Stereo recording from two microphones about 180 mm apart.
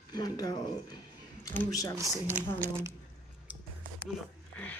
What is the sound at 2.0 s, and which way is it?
Speech, 20° right (ahead or behind).